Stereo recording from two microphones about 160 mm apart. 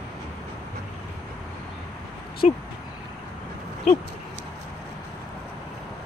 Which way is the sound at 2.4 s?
50° left (ahead or behind).